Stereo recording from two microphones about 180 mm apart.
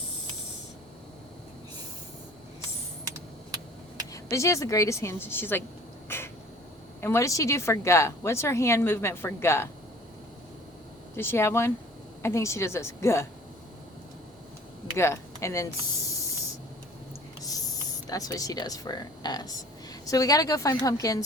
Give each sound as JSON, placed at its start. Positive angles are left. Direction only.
{"t": 4.1, "sound": "a woman's voice", "side_deg": 15}
{"t": 6.1, "sound": "a sound", "side_deg": 15}
{"t": 7.0, "sound": "a woman's voice", "side_deg": 15}
{"t": 11.2, "sound": "a woman's voice", "side_deg": 15}
{"t": 14.9, "sound": "speech", "side_deg": 15}
{"t": 18.1, "sound": "speech", "side_deg": 20}